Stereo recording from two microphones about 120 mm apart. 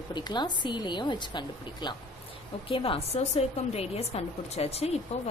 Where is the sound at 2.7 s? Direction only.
50° left (ahead or behind).